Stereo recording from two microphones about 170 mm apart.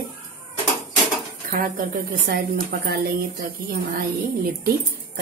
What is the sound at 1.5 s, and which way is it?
A woman's voice, 60° right (ahead or behind).